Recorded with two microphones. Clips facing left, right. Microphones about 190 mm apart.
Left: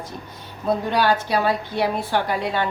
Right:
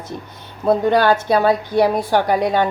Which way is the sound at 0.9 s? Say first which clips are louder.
Right 4 dB; 50° right (ahead or behind).